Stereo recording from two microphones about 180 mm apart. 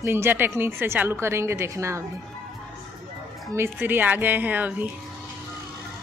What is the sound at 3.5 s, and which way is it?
A woman's voice, 15° right (ahead or behind).